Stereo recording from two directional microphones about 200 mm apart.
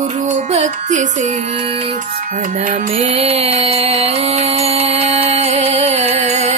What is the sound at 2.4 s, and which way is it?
Music, 40° right (ahead or behind).